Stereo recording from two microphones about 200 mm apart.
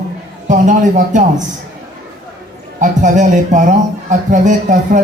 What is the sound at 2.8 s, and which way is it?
Speech, 40° right (ahead or behind).